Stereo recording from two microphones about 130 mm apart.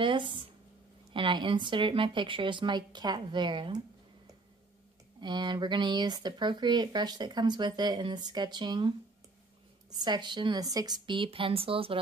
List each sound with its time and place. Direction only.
0.0 s speech: 40° right (ahead or behind)
5.2 s speech: 35° right (ahead or behind)
9.9 s speech: 35° right (ahead or behind)